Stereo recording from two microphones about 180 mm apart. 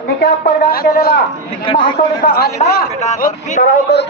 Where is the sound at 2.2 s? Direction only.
55° left (ahead or behind).